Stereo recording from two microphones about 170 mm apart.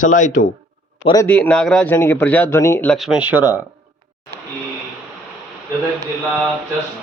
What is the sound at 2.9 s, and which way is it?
Speech, centre (ahead or behind).